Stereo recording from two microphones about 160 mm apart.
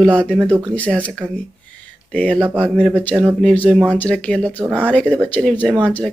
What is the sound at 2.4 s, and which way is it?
Speech, 10° right (ahead or behind).